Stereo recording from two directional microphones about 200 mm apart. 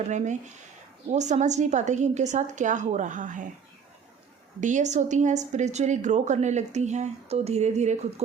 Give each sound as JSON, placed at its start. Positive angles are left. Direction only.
{"t": 0.1, "sound": "a woman's voice", "side_deg": -35}
{"t": 4.6, "sound": "a woman's voice", "side_deg": -35}